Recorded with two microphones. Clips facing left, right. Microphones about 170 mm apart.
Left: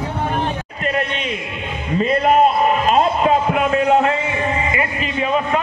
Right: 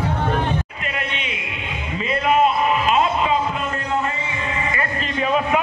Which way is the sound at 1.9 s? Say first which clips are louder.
Left 4 dB; 45° left (ahead or behind).